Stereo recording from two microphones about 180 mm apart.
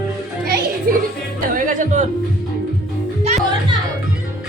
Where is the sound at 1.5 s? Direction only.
45° right (ahead or behind).